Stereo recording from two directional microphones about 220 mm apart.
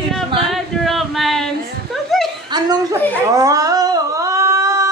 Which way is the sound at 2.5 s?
15° right (ahead or behind).